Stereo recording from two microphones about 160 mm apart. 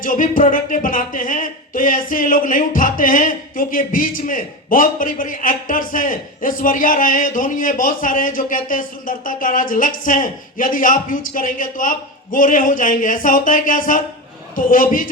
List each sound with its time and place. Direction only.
0.0 s music: 60° left (ahead or behind)